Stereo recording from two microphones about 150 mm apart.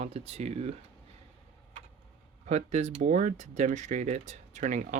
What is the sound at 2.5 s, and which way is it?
Speech, 50° right (ahead or behind).